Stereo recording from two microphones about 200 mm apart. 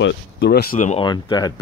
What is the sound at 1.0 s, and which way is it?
Speech, 20° left (ahead or behind).